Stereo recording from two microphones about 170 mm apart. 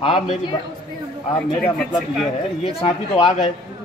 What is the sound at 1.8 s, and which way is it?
Speech, 5° left (ahead or behind).